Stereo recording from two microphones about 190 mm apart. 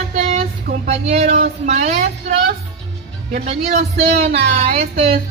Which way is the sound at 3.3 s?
40° right (ahead or behind).